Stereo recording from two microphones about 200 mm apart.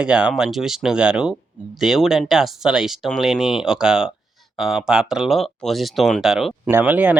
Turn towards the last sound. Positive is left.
turn(degrees=-5)  # may be behind; listen again after turning